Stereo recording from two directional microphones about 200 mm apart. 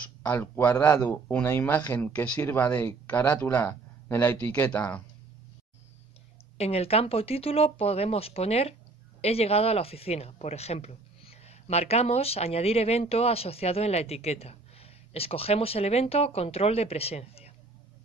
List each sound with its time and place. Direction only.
0.2 s speech: 10° left (ahead or behind)
6.6 s speech: 30° left (ahead or behind)